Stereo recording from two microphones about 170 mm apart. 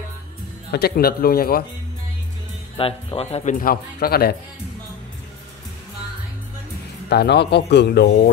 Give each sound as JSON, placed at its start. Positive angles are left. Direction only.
{"t": 0.7, "sound": "speech", "side_deg": 70}
{"t": 2.8, "sound": "speech", "side_deg": 35}
{"t": 3.5, "sound": "speech", "side_deg": 60}
{"t": 7.1, "sound": "speech", "side_deg": 80}